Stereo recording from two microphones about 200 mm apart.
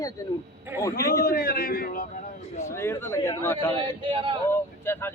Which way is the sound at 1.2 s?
50° left (ahead or behind).